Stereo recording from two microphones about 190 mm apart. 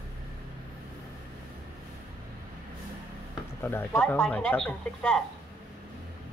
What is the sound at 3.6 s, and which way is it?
Speech, 10° left (ahead or behind).